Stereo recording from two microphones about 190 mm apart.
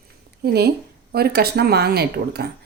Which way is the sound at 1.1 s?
55° right (ahead or behind).